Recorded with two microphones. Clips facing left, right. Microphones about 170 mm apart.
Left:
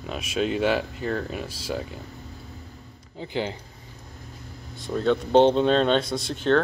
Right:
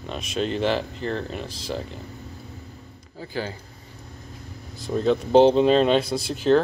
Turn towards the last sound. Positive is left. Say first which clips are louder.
# right 3 dB
turn(degrees=-5)  # may be behind; listen again after turning